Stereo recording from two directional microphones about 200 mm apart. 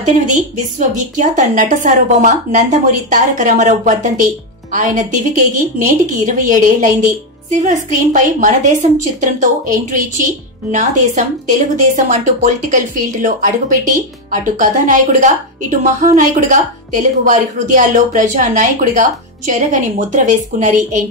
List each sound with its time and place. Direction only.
0.0 s a woman's voice: 35° right (ahead or behind)